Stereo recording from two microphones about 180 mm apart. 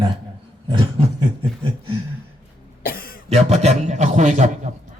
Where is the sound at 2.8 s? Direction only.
55° left (ahead or behind).